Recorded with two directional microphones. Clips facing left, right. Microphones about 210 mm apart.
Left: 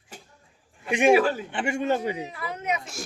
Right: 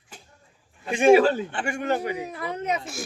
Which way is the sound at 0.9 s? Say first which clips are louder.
Right 3 dB; 20° left (ahead or behind).